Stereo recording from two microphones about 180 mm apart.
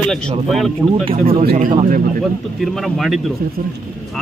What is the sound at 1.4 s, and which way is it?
Speech, 50° right (ahead or behind).